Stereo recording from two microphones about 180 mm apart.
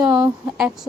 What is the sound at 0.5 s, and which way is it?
Speech, 5° right (ahead or behind).